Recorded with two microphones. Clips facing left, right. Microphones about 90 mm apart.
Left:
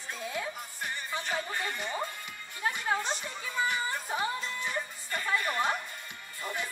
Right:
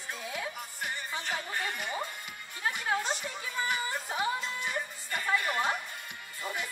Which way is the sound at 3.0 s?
15° right (ahead or behind).